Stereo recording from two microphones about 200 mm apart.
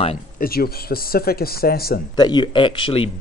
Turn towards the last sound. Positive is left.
turn(degrees=25)  # may be behind; listen again after turning